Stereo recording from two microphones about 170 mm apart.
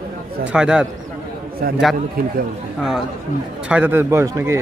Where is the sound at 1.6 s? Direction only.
65° right (ahead or behind).